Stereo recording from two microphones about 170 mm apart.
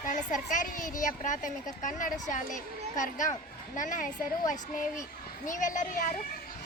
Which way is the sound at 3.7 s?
50° left (ahead or behind).